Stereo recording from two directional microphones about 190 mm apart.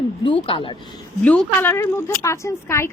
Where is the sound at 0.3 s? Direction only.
25° left (ahead or behind).